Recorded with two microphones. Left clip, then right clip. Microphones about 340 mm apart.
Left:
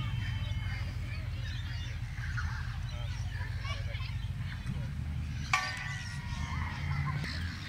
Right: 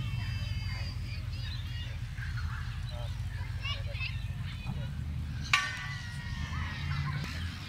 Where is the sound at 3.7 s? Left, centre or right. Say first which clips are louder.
Right 7 dB; centre.